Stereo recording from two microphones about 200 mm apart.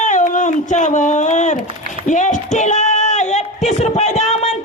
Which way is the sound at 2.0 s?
40° left (ahead or behind).